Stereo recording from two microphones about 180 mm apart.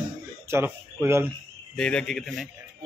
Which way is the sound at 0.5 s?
15° right (ahead or behind).